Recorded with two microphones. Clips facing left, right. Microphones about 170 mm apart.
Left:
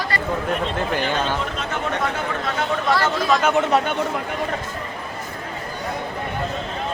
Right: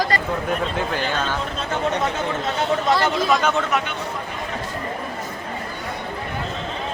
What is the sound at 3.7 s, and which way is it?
Speech, 35° left (ahead or behind).